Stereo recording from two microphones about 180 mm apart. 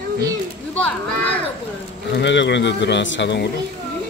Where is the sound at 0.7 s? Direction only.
5° left (ahead or behind).